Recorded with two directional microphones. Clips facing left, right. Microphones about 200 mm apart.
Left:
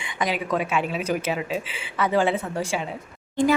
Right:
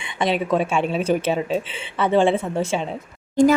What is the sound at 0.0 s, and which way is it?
A woman's voice, 25° right (ahead or behind).